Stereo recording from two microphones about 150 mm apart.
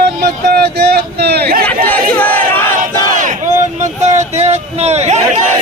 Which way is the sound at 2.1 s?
10° left (ahead or behind).